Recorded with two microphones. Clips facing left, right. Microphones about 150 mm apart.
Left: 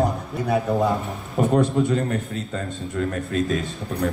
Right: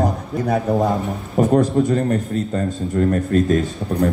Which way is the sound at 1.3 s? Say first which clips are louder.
Right 4 dB; 40° right (ahead or behind).